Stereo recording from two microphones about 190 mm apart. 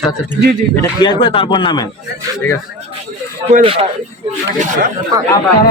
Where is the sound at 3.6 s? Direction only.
30° right (ahead or behind).